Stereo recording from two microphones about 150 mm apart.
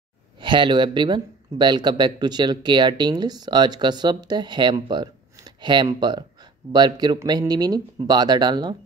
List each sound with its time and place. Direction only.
0.4 s speech: 35° right (ahead or behind)